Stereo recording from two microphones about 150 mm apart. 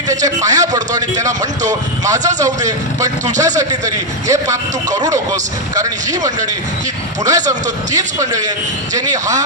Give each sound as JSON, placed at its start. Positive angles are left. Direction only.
{"t": 0.1, "sound": "a man's voice", "side_deg": -25}
{"t": 2.4, "sound": "a man's voice", "side_deg": -25}